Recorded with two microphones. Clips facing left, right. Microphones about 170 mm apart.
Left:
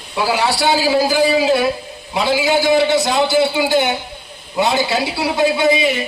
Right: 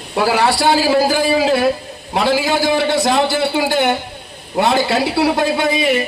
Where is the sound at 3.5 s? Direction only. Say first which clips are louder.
Even; 50° right (ahead or behind).